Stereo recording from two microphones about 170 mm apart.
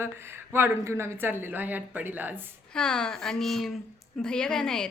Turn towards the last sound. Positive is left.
turn(degrees=5)  # may be behind; listen again after turning